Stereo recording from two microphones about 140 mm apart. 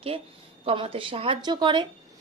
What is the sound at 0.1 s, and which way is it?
A woman's voice, 40° right (ahead or behind).